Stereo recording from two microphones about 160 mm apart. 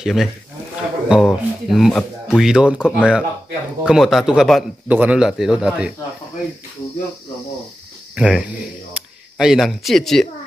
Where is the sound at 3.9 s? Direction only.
Centre (ahead or behind).